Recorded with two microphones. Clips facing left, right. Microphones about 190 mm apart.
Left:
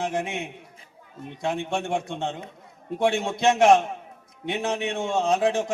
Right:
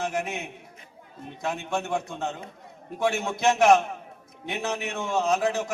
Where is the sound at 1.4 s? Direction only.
30° left (ahead or behind).